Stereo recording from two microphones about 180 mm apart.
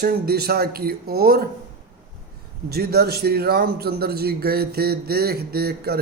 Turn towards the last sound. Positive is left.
turn(degrees=-60)  # may be behind; listen again after turning